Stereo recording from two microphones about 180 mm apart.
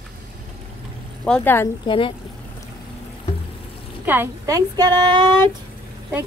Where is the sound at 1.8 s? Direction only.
30° left (ahead or behind).